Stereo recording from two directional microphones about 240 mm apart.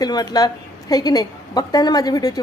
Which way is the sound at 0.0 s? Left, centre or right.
Centre.